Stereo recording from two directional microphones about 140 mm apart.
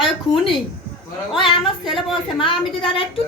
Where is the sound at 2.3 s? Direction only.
35° left (ahead or behind).